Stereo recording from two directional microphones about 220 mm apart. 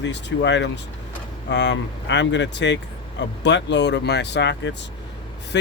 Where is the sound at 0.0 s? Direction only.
55° left (ahead or behind).